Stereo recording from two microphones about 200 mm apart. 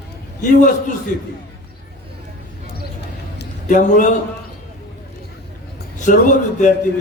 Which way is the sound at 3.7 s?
40° left (ahead or behind).